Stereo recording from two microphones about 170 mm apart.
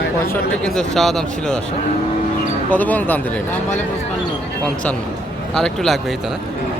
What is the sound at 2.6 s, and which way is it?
Speech, 10° left (ahead or behind).